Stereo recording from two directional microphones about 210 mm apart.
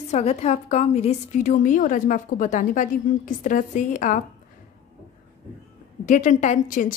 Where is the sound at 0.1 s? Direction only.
30° left (ahead or behind).